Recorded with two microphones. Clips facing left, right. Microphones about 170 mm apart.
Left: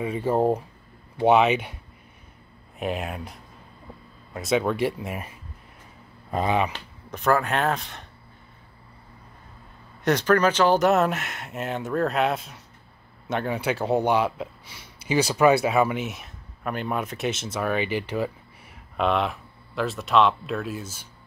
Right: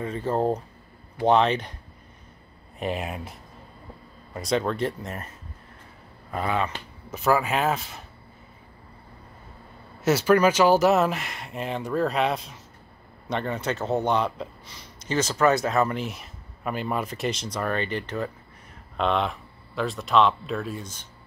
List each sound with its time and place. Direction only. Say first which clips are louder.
0.0 s speech: left 3 dB; 10° left (ahead or behind)
2.8 s speech: even; centre (ahead or behind); by 6.7 s 20° left (ahead or behind)
7.1 s speech: even; 5° right (ahead or behind)
10.0 s speech: right 1 dB; 5° right (ahead or behind)